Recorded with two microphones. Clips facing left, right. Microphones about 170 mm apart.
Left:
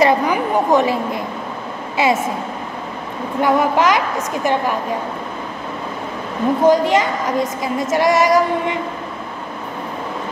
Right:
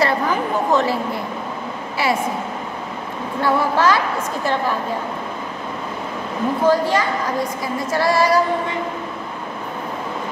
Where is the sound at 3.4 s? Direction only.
20° left (ahead or behind).